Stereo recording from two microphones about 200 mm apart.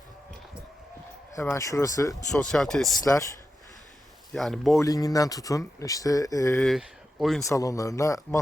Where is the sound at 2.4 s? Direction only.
5° left (ahead or behind).